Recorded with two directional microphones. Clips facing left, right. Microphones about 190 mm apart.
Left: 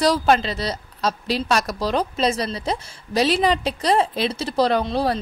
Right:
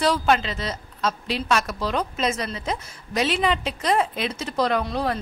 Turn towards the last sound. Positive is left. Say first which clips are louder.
# left 3 dB
turn(degrees=30)  # may be behind; listen again after turning